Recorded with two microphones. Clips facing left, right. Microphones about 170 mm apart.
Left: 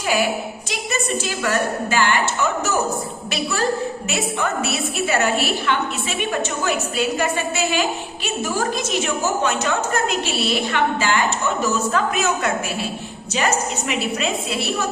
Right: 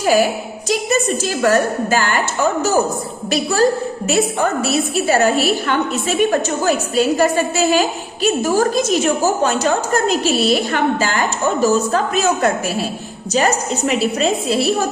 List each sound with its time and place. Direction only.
0.0 s a woman's voice: 40° right (ahead or behind)